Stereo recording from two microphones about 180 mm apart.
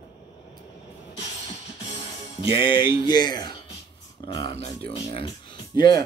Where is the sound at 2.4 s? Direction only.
30° left (ahead or behind).